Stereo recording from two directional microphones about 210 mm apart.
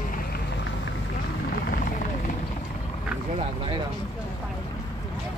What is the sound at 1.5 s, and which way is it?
Vehicle, 45° left (ahead or behind).